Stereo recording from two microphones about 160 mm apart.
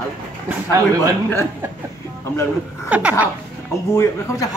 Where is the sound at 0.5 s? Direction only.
20° right (ahead or behind).